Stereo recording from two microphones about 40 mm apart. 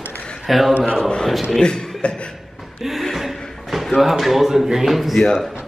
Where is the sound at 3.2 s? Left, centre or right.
Centre.